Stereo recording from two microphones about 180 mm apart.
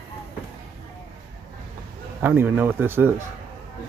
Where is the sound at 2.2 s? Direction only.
10° right (ahead or behind).